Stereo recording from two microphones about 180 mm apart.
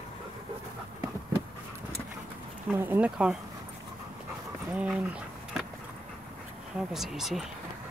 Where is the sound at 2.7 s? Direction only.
10° right (ahead or behind).